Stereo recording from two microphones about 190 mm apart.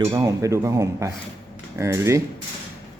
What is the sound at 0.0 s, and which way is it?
Speech, 20° right (ahead or behind).